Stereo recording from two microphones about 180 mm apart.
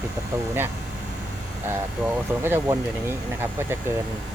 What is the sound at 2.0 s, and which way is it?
Speech, 10° right (ahead or behind).